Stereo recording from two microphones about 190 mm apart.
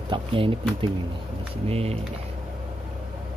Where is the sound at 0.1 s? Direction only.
25° right (ahead or behind).